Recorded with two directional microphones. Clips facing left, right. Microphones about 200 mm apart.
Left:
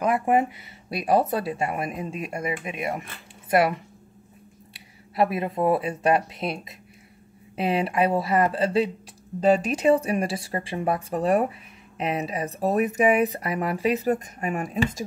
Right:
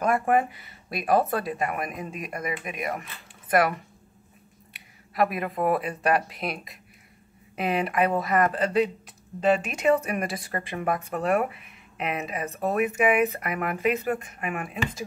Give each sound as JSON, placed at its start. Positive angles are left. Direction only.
{"t": 0.0, "sound": "speech", "side_deg": 20}
{"t": 5.1, "sound": "speech", "side_deg": 25}